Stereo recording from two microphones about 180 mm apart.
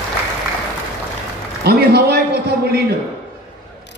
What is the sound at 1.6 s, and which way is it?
A man's voice, 60° right (ahead or behind).